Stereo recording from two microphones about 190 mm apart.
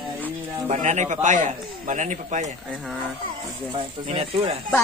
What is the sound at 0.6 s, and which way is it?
Speech, 40° right (ahead or behind).